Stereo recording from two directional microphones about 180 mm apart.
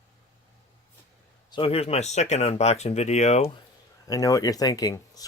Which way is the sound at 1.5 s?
30° left (ahead or behind).